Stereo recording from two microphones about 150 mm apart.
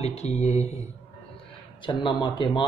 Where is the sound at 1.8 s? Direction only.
30° left (ahead or behind).